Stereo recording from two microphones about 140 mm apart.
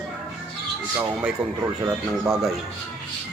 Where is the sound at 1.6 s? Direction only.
20° right (ahead or behind).